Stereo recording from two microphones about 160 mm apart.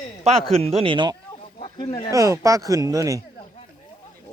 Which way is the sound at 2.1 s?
20° right (ahead or behind).